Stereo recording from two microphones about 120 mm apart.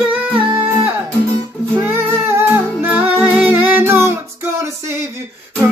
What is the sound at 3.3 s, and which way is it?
Music, 15° right (ahead or behind).